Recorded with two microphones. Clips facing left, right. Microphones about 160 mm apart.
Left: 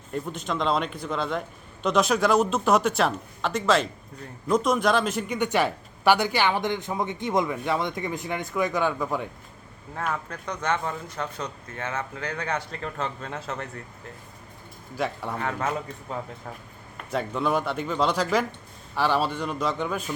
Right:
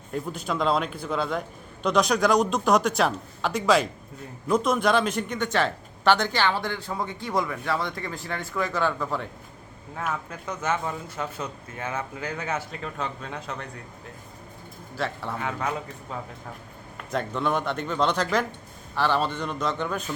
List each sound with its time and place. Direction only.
0.1 s speech: 5° right (ahead or behind)
5.4 s speech: 15° left (ahead or behind)
10.0 s speech: 5° right (ahead or behind)
14.9 s speech: 10° left (ahead or behind)
15.4 s speech: centre (ahead or behind)
17.1 s speech: 5° left (ahead or behind)